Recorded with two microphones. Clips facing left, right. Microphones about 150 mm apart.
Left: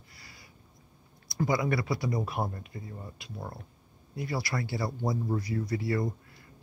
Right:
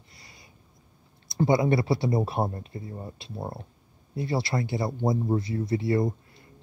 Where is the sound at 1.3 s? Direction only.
25° right (ahead or behind).